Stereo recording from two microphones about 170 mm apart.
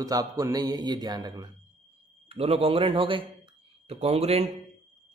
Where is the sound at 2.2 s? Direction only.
35° right (ahead or behind).